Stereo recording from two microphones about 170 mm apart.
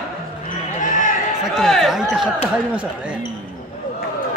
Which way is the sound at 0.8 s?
50° left (ahead or behind).